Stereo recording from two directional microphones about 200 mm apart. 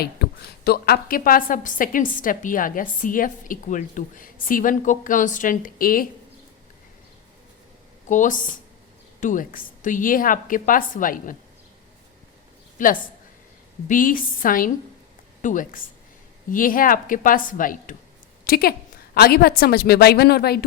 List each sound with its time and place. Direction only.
0.0 s a woman's voice: 50° left (ahead or behind)
8.0 s a woman's voice: 40° left (ahead or behind)
12.8 s a woman's voice: 40° left (ahead or behind)